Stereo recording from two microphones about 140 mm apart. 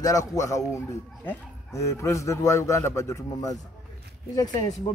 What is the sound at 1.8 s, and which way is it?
Speech, 20° left (ahead or behind).